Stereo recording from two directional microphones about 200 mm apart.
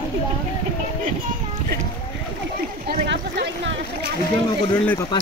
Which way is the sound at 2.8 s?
55° right (ahead or behind).